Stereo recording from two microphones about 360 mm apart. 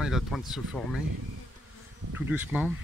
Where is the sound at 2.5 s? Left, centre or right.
Centre.